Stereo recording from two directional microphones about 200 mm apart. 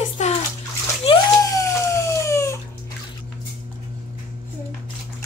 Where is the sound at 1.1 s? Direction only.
15° left (ahead or behind).